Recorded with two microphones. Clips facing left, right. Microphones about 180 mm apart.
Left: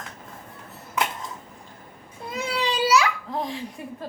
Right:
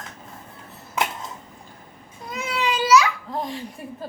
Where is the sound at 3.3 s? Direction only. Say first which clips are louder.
Even; centre (ahead or behind).